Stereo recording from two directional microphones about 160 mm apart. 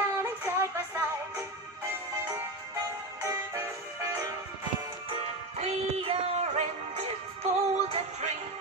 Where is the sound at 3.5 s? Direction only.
10° right (ahead or behind).